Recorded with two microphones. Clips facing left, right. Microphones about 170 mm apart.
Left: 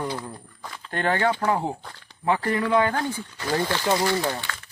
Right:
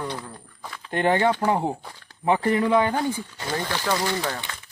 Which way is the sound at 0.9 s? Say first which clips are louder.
Right 3 dB; 20° right (ahead or behind).